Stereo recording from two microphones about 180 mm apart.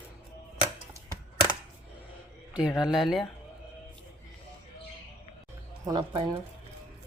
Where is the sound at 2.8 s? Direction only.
Centre (ahead or behind).